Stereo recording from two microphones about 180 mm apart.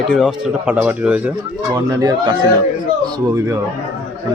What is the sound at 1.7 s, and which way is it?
Speech, 20° right (ahead or behind).